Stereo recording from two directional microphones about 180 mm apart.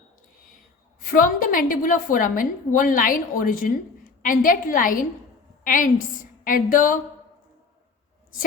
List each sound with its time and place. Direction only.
0.4 s a woman's voice: 50° left (ahead or behind)